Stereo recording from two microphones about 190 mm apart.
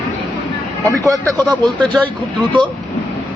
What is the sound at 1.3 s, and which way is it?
Speech, 5° left (ahead or behind).